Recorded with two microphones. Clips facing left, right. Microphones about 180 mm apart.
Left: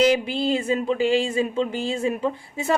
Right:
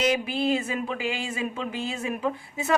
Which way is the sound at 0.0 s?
30° left (ahead or behind).